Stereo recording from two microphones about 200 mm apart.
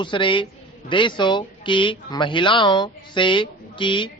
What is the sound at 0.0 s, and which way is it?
Speech, 25° left (ahead or behind).